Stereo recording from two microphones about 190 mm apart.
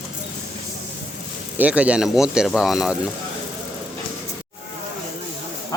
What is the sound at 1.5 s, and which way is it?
Speech, 5° right (ahead or behind).